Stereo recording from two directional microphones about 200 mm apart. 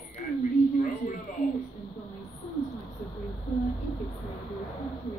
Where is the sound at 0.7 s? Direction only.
40° left (ahead or behind).